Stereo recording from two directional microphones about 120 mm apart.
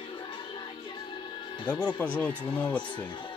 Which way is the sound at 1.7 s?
15° left (ahead or behind).